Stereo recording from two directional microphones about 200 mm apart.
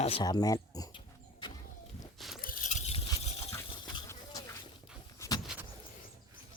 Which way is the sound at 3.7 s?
20° left (ahead or behind).